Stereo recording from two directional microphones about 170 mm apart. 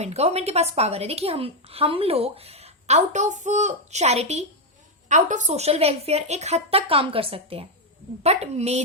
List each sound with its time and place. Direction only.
0.0 s a woman's voice: 40° right (ahead or behind)